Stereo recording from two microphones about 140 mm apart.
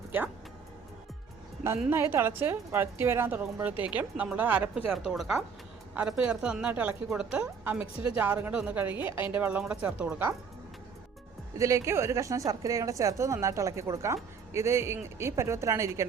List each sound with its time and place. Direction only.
1.9 s a woman's voice: 15° right (ahead or behind)
11.5 s speech: 20° right (ahead or behind)